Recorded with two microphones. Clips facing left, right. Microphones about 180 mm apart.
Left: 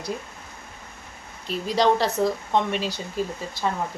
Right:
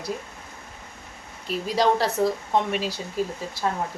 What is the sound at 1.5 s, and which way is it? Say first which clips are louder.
Speech: left 1 dB; 5° right (ahead or behind).